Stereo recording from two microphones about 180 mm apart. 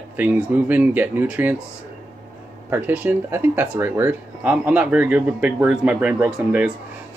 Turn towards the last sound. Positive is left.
turn(degrees=-5)  # may be behind; listen again after turning